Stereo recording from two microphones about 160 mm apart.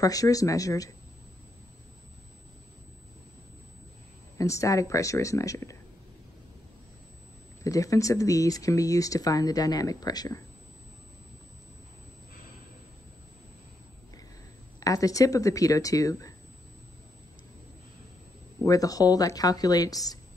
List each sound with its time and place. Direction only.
0.0 s speech: 20° left (ahead or behind)
4.4 s speech: 20° left (ahead or behind)
7.6 s speech: 20° left (ahead or behind)
14.8 s speech: 20° left (ahead or behind)
18.6 s speech: 20° left (ahead or behind)